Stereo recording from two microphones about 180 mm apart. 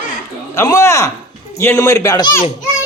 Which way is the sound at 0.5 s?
15° left (ahead or behind).